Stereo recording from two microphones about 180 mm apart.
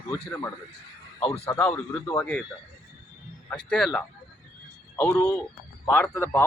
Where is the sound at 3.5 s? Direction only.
5° left (ahead or behind).